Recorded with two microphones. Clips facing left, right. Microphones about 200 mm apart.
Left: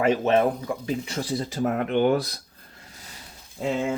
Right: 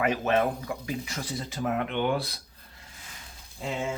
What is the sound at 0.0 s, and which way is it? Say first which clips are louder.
Speech: left 5 dB; 25° left (ahead or behind).